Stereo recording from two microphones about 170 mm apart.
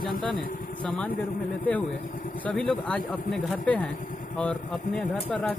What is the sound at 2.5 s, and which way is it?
Speech, 5° left (ahead or behind).